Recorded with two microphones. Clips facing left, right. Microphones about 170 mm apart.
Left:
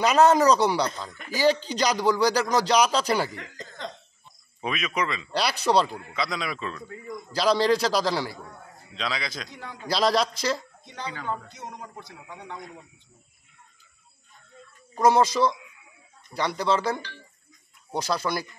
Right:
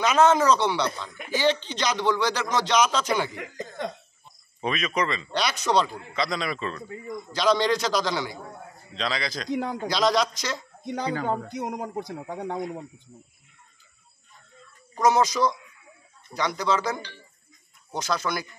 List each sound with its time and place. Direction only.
0.0 s a man's voice: 35° left (ahead or behind)
4.6 s speech: 5° left (ahead or behind)
5.3 s a man's voice: 35° left (ahead or behind)
6.1 s speech: centre (ahead or behind)
7.3 s a man's voice: 35° left (ahead or behind)
8.9 s speech: centre (ahead or behind)
9.8 s a man's voice: 30° left (ahead or behind)
11.1 s speech: 40° right (ahead or behind)
11.4 s speech: 15° right (ahead or behind)
11.7 s speech: 70° right (ahead or behind)
12.0 s speech: 40° right (ahead or behind)
15.0 s a man's voice: 30° left (ahead or behind)
17.9 s a man's voice: 30° left (ahead or behind)